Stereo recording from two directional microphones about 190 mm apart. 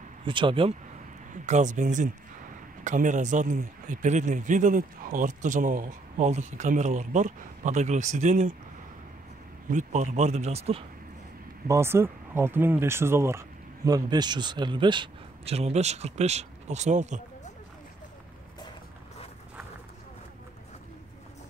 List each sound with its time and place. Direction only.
0.2 s speech: 25° right (ahead or behind)
1.3 s speech: 40° right (ahead or behind)
9.7 s speech: 40° right (ahead or behind)
11.6 s speech: 15° right (ahead or behind); by 17.2 s 40° right (ahead or behind)